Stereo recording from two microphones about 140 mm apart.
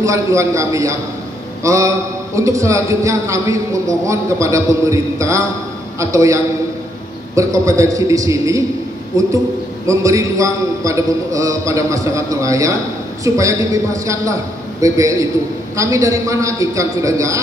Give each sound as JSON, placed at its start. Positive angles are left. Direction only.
{"t": 0.0, "sound": "a man's voice", "side_deg": -20}